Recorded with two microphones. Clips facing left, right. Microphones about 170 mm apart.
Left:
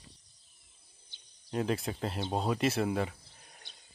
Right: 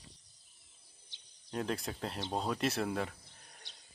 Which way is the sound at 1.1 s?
90° right.